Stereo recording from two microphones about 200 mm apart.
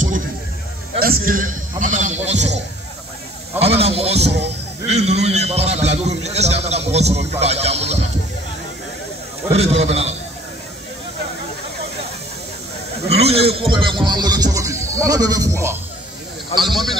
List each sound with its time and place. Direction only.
0.9 s a man's voice: 45° right (ahead or behind)
9.5 s a man's voice: 30° right (ahead or behind)
13.1 s speech: 30° right (ahead or behind)
16.5 s a man's voice: centre (ahead or behind)